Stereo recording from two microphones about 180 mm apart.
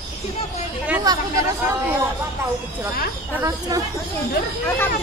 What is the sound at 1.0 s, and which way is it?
Speech, 20° right (ahead or behind).